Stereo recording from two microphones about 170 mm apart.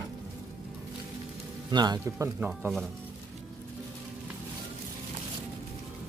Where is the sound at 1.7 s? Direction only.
25° right (ahead or behind).